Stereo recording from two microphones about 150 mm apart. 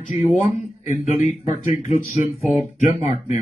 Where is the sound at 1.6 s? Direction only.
45° left (ahead or behind).